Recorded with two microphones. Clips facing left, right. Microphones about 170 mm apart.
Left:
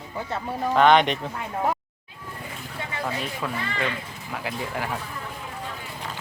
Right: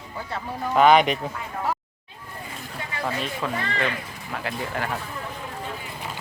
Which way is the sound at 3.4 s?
5° left (ahead or behind).